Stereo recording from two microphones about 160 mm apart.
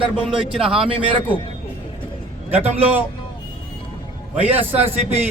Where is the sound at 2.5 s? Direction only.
40° right (ahead or behind).